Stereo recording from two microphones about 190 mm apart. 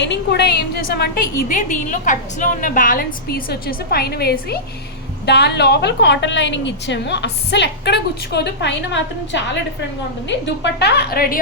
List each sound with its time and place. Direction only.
0.0 s a woman's voice: 65° left (ahead or behind)